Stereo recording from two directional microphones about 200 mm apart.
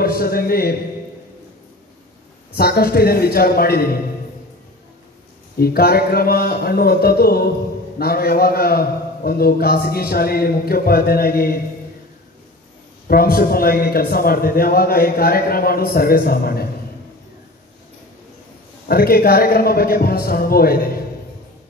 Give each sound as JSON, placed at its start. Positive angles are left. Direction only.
{"t": 0.0, "sound": "a man's voice", "side_deg": 50}
{"t": 2.5, "sound": "a man's voice", "side_deg": 50}
{"t": 5.6, "sound": "a man's voice", "side_deg": 50}
{"t": 13.1, "sound": "a man's voice", "side_deg": 50}
{"t": 18.9, "sound": "a man's voice", "side_deg": 50}